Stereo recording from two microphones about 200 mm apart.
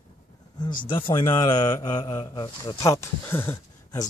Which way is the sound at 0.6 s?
25° left (ahead or behind).